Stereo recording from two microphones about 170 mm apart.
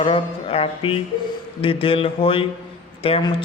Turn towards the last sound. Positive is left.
turn(degrees=30)  # may be behind; listen again after turning